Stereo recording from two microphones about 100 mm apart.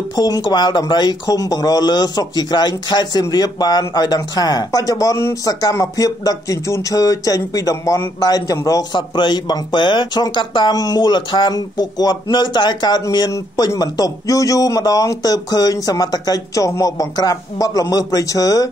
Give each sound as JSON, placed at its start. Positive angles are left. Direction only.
{"t": 0.1, "sound": "speech", "side_deg": 40}